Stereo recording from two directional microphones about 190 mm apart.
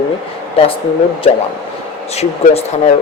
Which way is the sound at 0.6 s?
30° left (ahead or behind).